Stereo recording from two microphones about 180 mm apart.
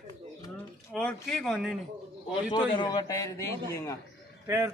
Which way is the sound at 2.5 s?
25° left (ahead or behind).